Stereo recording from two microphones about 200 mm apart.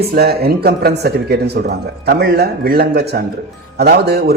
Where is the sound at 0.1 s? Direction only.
50° right (ahead or behind).